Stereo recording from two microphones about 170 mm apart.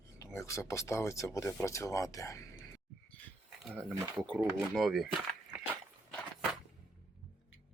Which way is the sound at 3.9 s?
5° right (ahead or behind).